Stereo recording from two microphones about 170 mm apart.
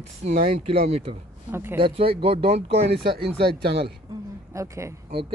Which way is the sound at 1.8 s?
30° right (ahead or behind).